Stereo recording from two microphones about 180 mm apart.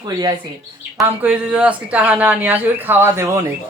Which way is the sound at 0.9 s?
5° right (ahead or behind).